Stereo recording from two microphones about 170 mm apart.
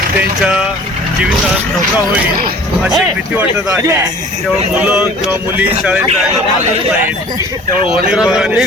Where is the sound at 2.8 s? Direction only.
10° right (ahead or behind).